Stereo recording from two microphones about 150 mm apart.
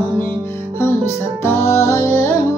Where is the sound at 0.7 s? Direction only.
15° left (ahead or behind).